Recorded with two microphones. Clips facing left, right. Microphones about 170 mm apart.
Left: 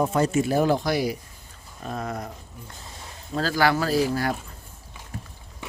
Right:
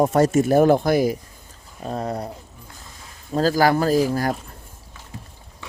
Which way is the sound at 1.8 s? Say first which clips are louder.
Right 4 dB; 35° right (ahead or behind).